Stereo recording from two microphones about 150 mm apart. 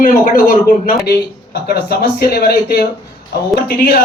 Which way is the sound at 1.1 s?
90° left.